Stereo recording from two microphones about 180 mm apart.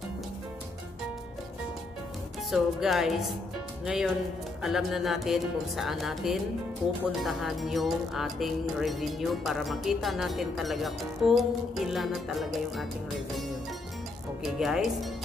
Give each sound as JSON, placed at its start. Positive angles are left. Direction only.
{"t": 2.5, "sound": "speech", "side_deg": 0}
{"t": 14.4, "sound": "speech", "side_deg": 0}